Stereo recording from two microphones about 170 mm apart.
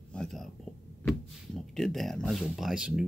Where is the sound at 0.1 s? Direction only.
5° left (ahead or behind).